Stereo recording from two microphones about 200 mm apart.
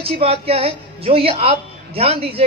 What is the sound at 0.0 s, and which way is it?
A woman's voice, 30° right (ahead or behind).